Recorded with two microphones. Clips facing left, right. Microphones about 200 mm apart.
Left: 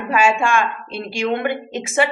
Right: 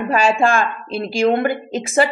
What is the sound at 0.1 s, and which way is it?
A woman's voice, 35° right (ahead or behind).